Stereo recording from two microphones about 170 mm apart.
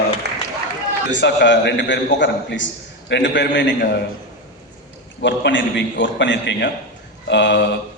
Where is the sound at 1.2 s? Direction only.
90° left.